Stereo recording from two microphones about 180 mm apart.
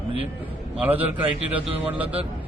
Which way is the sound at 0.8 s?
10° right (ahead or behind).